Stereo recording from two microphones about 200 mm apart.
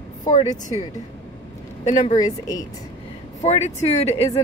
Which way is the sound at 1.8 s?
40° left (ahead or behind).